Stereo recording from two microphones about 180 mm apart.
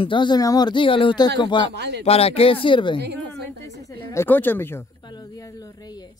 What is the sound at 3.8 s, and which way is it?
Speech, 15° left (ahead or behind).